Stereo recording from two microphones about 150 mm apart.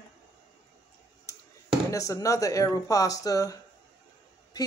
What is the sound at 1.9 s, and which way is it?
A man's voice, 20° left (ahead or behind).